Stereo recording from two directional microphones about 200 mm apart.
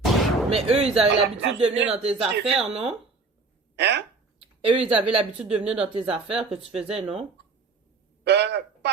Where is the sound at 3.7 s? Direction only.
60° right (ahead or behind).